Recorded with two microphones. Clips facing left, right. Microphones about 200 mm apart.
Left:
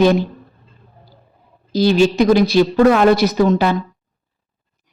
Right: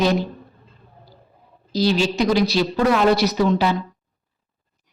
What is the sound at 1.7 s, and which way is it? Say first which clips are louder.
A woman's voice: left 6 dB; 55° left (ahead or behind).